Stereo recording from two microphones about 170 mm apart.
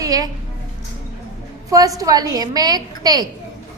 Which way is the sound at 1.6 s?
20° right (ahead or behind).